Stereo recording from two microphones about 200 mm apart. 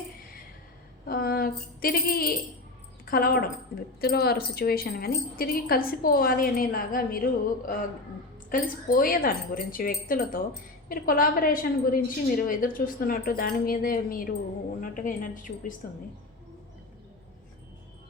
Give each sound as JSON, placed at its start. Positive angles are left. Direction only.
{"t": 1.0, "sound": "a sound", "side_deg": 50}
{"t": 3.1, "sound": "a woman's voice", "side_deg": 50}
{"t": 8.4, "sound": "a woman's voice", "side_deg": 45}